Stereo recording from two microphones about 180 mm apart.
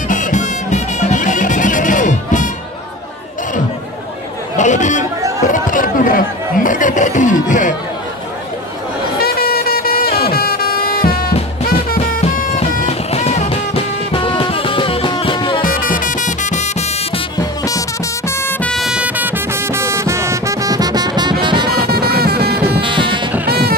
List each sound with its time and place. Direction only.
0.1 s music: 45° left (ahead or behind)
4.6 s chatter: 40° left (ahead or behind)
9.2 s vehicle: 55° left (ahead or behind)
10.3 s music: 55° left (ahead or behind)
12.0 s music: 35° left (ahead or behind)
15.6 s music: 50° left (ahead or behind)
18.3 s music: 10° left (ahead or behind); by 21.6 s 25° right (ahead or behind)
21.9 s music: 60° right (ahead or behind)
22.8 s music: 25° right (ahead or behind)
23.4 s music: 60° right (ahead or behind)